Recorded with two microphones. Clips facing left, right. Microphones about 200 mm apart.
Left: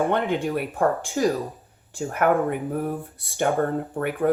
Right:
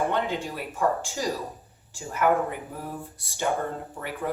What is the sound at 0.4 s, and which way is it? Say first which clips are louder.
Speech: left 4 dB; 55° left (ahead or behind).